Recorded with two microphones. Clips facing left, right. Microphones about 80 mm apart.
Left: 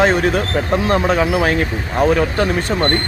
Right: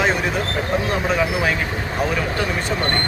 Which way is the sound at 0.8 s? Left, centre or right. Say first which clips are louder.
Left 5 dB; left.